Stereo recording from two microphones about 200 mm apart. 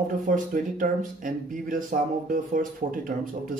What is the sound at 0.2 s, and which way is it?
Speech, 40° right (ahead or behind).